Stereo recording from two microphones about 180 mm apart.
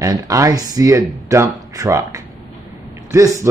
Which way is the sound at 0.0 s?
20° right (ahead or behind).